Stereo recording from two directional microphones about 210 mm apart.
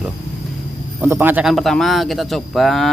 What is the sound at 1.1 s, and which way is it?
Speech, 10° right (ahead or behind).